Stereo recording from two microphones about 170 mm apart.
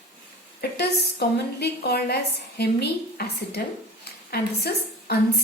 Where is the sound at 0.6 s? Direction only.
70° left (ahead or behind).